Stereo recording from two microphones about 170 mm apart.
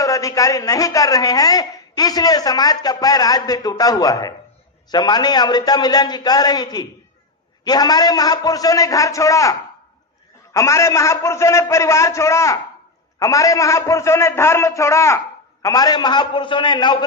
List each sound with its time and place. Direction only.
0.0 s a woman's voice: 20° left (ahead or behind)